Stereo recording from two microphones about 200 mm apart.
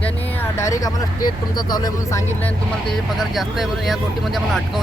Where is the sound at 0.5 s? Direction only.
15° left (ahead or behind).